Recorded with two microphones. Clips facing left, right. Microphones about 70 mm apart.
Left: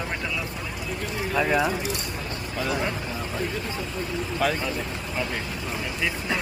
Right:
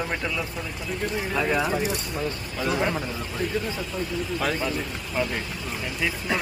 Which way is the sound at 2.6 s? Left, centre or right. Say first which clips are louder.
Right 3 dB; right.